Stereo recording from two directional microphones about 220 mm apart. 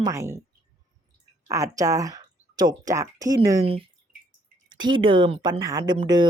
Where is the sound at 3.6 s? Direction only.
25° right (ahead or behind).